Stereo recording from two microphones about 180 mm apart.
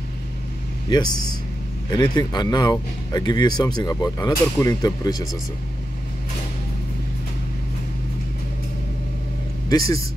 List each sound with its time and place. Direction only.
1.9 s speech: 25° left (ahead or behind)
9.7 s speech: 20° left (ahead or behind)